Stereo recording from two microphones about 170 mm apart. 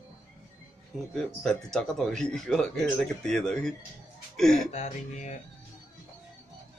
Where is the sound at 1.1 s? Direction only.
Centre (ahead or behind).